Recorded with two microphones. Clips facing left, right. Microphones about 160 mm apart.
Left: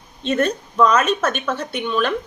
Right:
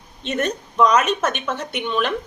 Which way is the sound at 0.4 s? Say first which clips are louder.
Even; 20° right (ahead or behind).